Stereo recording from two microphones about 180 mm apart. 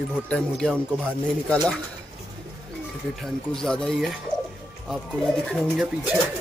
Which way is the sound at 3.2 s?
Centre (ahead or behind).